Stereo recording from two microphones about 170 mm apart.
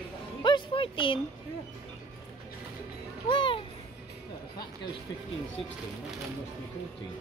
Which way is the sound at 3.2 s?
30° left (ahead or behind).